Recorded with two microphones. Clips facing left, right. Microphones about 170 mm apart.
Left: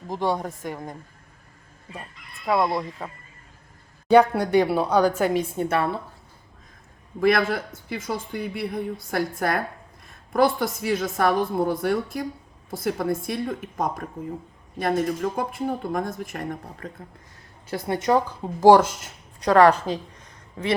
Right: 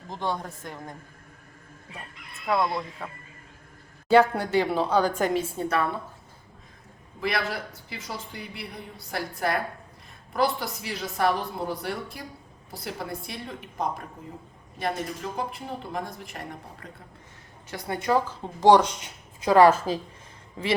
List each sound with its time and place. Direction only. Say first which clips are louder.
0.3 s a woman's voice: left 4 dB; 20° left (ahead or behind)
2.6 s a woman's voice: left 3 dB; 20° left (ahead or behind)
4.4 s a woman's voice: left 4 dB; 15° left (ahead or behind)
5.6 s a woman's voice: left 2 dB; 30° left (ahead or behind)
7.2 s a woman's voice: left 8 dB; 50° left (ahead or behind)
17.7 s a woman's voice: left 4 dB; 25° left (ahead or behind)
18.6 s a woman's voice: left 3 dB; 5° left (ahead or behind)